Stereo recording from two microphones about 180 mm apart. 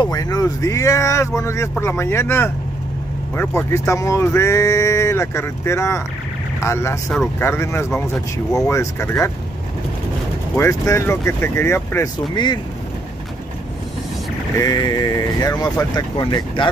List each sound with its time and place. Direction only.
0.0 s speech: 20° left (ahead or behind)
10.5 s speech: 15° left (ahead or behind)
14.7 s speech: 20° left (ahead or behind)